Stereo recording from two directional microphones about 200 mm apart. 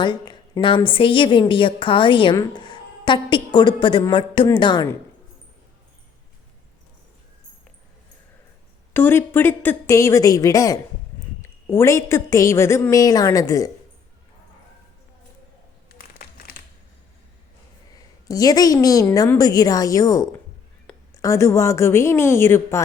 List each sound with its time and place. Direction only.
0.0 s a woman's voice: 20° left (ahead or behind)
8.9 s a woman's voice: 10° left (ahead or behind)
15.9 s crumpling: 50° left (ahead or behind)
18.3 s a woman's voice: 20° left (ahead or behind)